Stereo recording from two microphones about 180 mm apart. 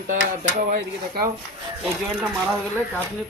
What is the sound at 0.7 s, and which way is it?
Speech, 55° right (ahead or behind).